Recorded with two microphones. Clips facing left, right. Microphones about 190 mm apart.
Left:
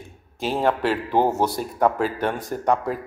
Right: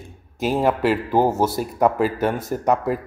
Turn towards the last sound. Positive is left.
turn(degrees=-5)  # may be behind; listen again after turning